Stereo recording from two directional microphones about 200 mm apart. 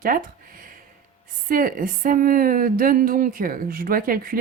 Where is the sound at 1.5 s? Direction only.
45° right (ahead or behind).